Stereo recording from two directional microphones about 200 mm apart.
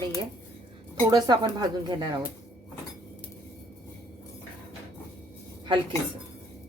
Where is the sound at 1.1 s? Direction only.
20° right (ahead or behind).